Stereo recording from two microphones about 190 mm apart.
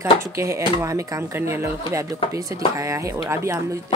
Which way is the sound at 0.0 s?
15° right (ahead or behind).